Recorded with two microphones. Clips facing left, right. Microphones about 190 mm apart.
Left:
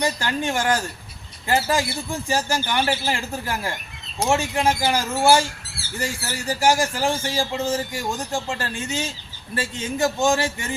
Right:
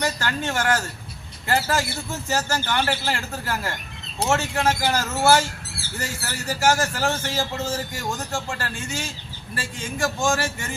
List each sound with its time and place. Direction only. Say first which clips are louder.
0.0 s a man's voice: left 2 dB; 15° left (ahead or behind)